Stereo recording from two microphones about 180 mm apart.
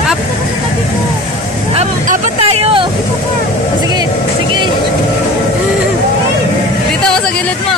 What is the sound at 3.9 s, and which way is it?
Vehicle, 25° right (ahead or behind).